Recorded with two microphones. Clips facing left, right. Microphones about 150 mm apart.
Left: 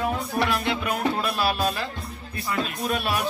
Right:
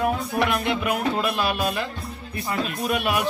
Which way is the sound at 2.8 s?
15° right (ahead or behind).